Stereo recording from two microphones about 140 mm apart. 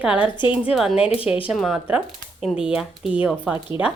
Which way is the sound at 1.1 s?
40° left (ahead or behind).